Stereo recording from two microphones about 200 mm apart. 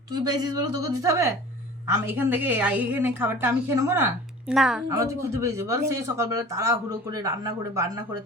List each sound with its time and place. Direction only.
0.1 s a woman's voice: 20° right (ahead or behind)
4.5 s a woman's voice: centre (ahead or behind)
4.9 s speech: 15° right (ahead or behind)